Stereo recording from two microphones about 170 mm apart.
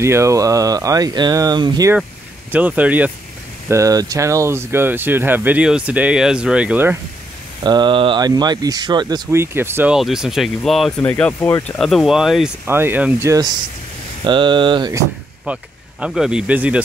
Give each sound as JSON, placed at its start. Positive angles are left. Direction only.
{"t": 0.0, "sound": "speech", "side_deg": -15}
{"t": 2.5, "sound": "speech", "side_deg": -10}
{"t": 7.6, "sound": "speech", "side_deg": -25}
{"t": 9.9, "sound": "speech", "side_deg": 0}
{"t": 12.6, "sound": "speech", "side_deg": -15}
{"t": 15.4, "sound": "speech", "side_deg": -5}